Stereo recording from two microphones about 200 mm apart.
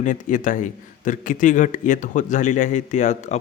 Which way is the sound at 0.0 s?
40° left (ahead or behind).